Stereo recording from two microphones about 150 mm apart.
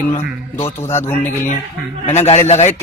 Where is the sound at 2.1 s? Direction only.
45° left (ahead or behind).